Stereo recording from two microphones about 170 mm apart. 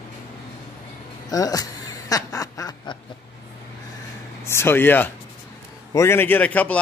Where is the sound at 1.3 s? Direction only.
20° left (ahead or behind).